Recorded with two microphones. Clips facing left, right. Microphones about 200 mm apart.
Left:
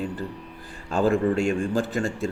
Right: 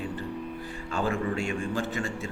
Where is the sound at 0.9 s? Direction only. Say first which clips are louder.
Left 8 dB; 40° left (ahead or behind).